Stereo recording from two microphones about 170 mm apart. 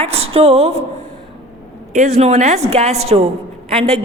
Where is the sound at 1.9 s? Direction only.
45° right (ahead or behind).